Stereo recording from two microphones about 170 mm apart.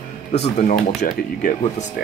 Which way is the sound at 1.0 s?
55° left (ahead or behind).